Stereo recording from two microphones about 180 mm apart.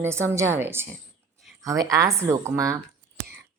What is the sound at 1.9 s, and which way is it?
Speech, 15° right (ahead or behind).